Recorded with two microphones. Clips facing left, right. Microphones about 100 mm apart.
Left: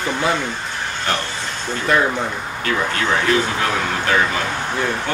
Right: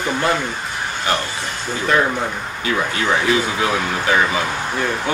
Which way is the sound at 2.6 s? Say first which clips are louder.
Even; 5° right (ahead or behind).